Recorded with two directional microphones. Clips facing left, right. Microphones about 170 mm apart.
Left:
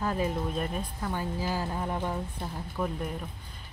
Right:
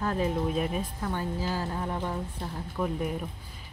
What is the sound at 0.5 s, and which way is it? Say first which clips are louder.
Speech: right 3 dB; 5° right (ahead or behind).